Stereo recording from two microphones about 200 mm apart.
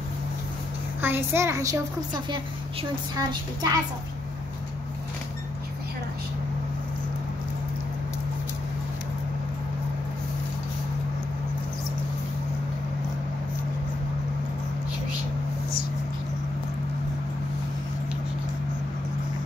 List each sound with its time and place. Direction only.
1.0 s a child's voice: 10° right (ahead or behind)